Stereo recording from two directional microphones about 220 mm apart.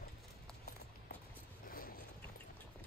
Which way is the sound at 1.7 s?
40° left (ahead or behind).